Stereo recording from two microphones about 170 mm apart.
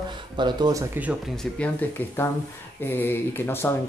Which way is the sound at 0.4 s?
25° right (ahead or behind).